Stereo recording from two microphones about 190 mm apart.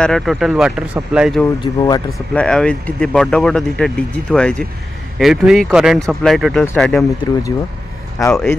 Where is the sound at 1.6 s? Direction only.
20° left (ahead or behind).